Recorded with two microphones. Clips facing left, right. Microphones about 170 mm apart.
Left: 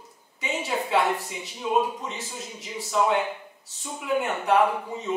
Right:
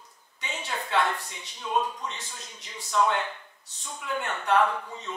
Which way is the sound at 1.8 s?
25° left (ahead or behind).